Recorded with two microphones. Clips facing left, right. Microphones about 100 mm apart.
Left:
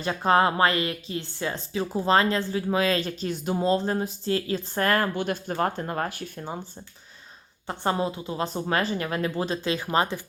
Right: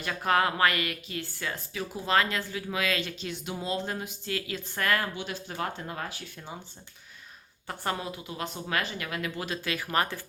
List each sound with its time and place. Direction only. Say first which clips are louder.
0.0 s a woman's voice: left 5 dB; 30° left (ahead or behind); by 6.6 s 50° left (ahead or behind)
7.7 s a woman's voice: left 7 dB; 30° left (ahead or behind)